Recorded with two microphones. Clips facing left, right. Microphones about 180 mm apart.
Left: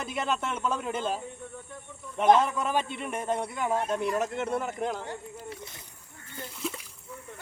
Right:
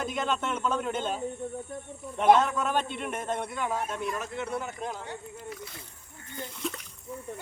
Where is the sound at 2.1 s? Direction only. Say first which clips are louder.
Even; 5° right (ahead or behind).